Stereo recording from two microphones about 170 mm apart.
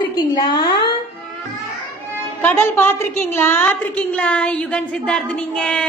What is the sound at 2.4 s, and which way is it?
A woman's voice, 10° left (ahead or behind).